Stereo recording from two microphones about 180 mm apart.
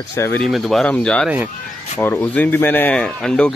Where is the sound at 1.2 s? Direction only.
10° right (ahead or behind).